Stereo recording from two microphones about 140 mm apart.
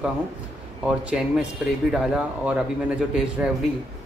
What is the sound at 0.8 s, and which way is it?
Speech, 5° right (ahead or behind).